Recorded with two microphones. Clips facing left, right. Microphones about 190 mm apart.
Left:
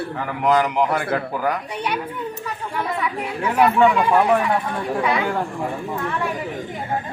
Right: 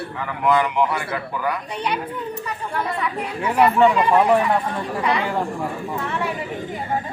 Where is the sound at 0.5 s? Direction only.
45° left (ahead or behind).